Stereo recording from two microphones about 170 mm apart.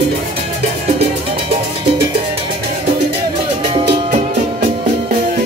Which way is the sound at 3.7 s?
30° right (ahead or behind).